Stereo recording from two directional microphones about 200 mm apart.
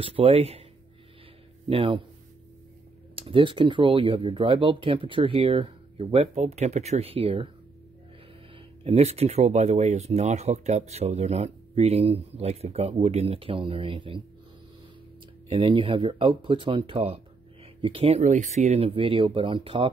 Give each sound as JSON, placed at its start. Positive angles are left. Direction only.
{"t": 0.0, "sound": "speech", "side_deg": -30}
{"t": 1.7, "sound": "speech", "side_deg": -25}
{"t": 3.2, "sound": "speech", "side_deg": -25}
{"t": 8.8, "sound": "speech", "side_deg": -30}
{"t": 15.5, "sound": "speech", "side_deg": -25}